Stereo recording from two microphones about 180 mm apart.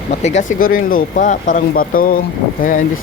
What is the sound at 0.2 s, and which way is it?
Speech, 40° left (ahead or behind).